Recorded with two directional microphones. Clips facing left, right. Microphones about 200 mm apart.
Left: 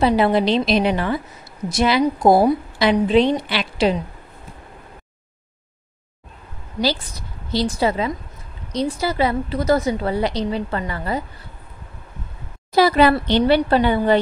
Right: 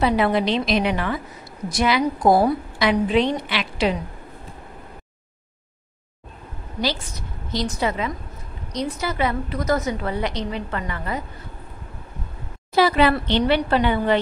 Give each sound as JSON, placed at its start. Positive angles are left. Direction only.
{"t": 0.0, "sound": "a woman's voice", "side_deg": 30}
{"t": 7.5, "sound": "a woman's voice", "side_deg": 30}
{"t": 12.7, "sound": "a woman's voice", "side_deg": 40}